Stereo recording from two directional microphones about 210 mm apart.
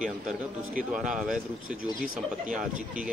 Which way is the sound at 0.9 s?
5° right (ahead or behind).